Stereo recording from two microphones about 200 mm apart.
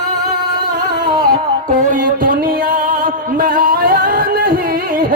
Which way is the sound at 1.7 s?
40° right (ahead or behind).